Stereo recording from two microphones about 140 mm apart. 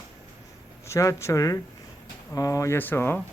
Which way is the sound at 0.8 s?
20° left (ahead or behind).